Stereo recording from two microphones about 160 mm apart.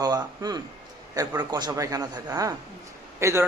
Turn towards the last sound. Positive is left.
turn(degrees=-15)  # may be behind; listen again after turning